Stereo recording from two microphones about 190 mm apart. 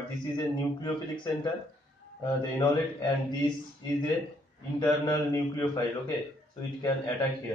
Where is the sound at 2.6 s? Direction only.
25° left (ahead or behind).